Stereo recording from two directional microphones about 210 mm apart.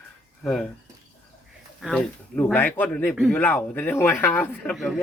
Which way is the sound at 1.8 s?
Centre (ahead or behind).